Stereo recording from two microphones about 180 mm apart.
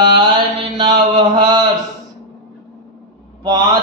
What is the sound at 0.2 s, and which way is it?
Mantra, 25° right (ahead or behind).